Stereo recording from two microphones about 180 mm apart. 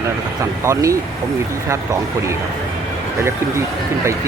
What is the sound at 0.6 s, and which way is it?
Speech, 15° right (ahead or behind).